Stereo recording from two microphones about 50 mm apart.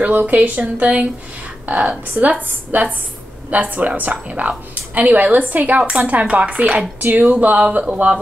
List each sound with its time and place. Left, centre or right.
0.0 s a woman's voice: right
7.0 s a woman's voice: right